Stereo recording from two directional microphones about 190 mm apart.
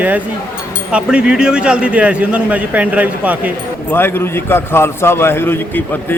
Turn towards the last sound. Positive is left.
turn(degrees=10)  # may be behind; listen again after turning